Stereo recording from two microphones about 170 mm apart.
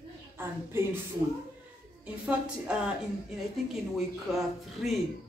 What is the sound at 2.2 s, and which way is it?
Speech, 5° right (ahead or behind).